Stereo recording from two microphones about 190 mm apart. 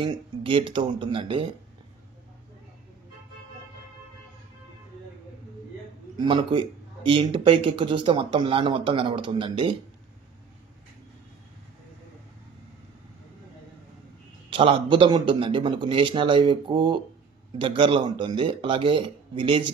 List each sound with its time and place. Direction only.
0.0 s speech: 25° right (ahead or behind)
6.1 s speech: 25° right (ahead or behind)
14.5 s speech: 25° right (ahead or behind)